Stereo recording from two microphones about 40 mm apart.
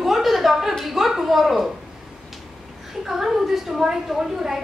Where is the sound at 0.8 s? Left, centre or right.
Centre.